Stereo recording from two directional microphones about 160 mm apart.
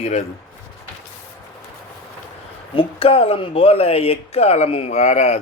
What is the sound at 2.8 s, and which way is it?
Speech, 35° left (ahead or behind).